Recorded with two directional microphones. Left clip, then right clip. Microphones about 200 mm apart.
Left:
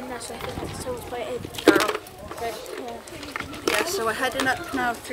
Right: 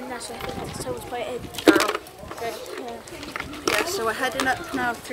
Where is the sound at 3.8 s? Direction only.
5° left (ahead or behind).